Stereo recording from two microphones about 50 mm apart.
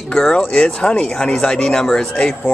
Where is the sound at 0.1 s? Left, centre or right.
Centre.